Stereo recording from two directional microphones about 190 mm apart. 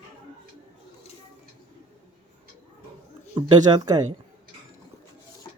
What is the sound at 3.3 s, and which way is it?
Speech, 20° right (ahead or behind).